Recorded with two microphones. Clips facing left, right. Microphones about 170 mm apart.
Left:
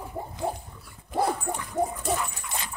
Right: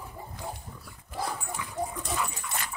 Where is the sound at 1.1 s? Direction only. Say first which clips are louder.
Left 8 dB; 60° left (ahead or behind).